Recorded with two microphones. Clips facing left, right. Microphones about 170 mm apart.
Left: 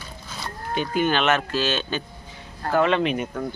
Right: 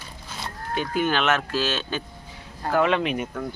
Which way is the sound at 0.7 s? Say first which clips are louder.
Left 2 dB; centre (ahead or behind).